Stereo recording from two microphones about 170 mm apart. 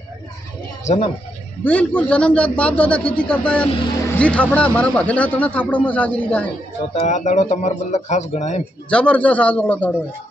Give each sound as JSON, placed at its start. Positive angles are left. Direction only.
{"t": 0.8, "sound": "a man's voice", "side_deg": 40}
{"t": 1.6, "sound": "speech", "side_deg": 10}
{"t": 7.0, "sound": "speech", "side_deg": 45}
{"t": 8.9, "sound": "speech", "side_deg": 10}